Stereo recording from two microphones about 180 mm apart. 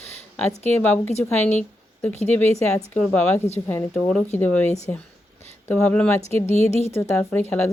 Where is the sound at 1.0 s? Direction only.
35° left (ahead or behind).